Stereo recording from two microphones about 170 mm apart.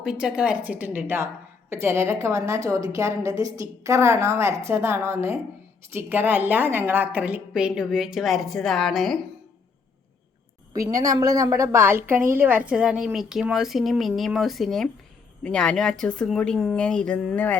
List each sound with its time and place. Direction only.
0.0 s a woman's voice: 5° right (ahead or behind)
10.8 s a woman's voice: 20° right (ahead or behind); by 17.6 s 10° left (ahead or behind)